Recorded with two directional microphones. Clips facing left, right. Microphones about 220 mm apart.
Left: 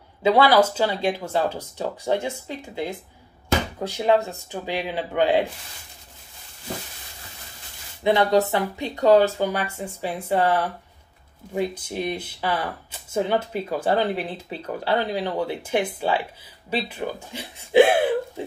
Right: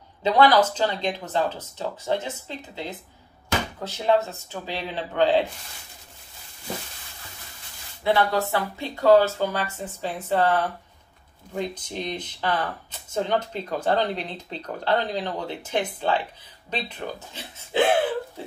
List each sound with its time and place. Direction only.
0.2 s speech: 10° left (ahead or behind)
8.0 s speech: 20° left (ahead or behind)